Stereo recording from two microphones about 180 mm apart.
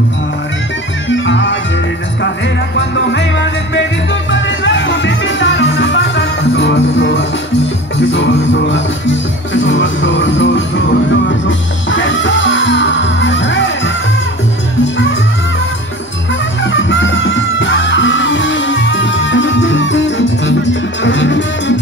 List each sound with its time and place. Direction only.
1.0 s music: 90° left
3.1 s music: 90° left
16.6 s music: 90° left